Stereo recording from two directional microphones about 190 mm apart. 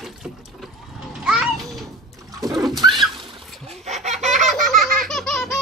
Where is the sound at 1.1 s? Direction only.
Centre (ahead or behind).